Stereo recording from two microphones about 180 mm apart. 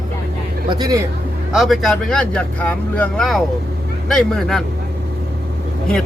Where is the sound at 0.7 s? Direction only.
20° right (ahead or behind).